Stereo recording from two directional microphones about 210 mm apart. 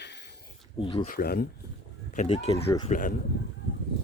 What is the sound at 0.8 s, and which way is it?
Speech, 25° left (ahead or behind).